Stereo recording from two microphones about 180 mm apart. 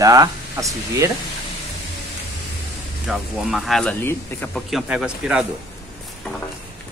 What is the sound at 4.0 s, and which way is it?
Speech, 10° left (ahead or behind).